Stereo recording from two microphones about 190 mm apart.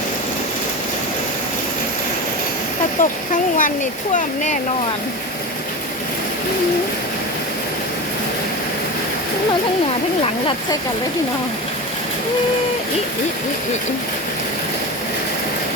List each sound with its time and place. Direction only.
3.0 s speech: 40° left (ahead or behind)